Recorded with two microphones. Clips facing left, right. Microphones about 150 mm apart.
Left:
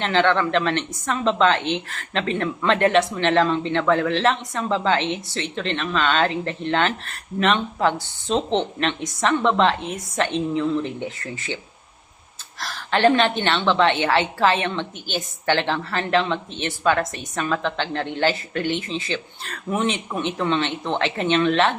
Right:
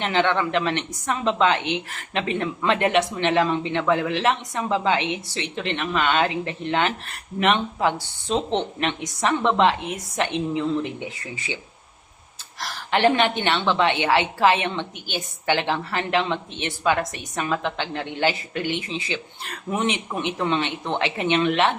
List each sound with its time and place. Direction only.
0.0 s a woman's voice: 15° right (ahead or behind)